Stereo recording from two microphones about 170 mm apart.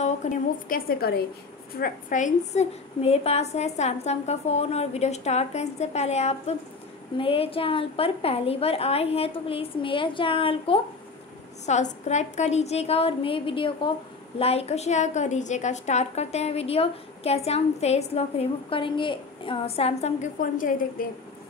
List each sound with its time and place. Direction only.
0.0 s a woman's voice: 50° left (ahead or behind)
1.8 s a woman's voice: 50° left (ahead or behind); by 10.8 s 30° left (ahead or behind)
11.6 s a woman's voice: 45° left (ahead or behind)